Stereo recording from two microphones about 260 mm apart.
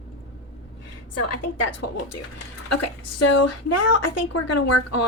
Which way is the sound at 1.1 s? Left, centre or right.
Left.